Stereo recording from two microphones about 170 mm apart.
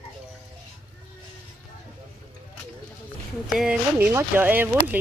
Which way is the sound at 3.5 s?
5° right (ahead or behind).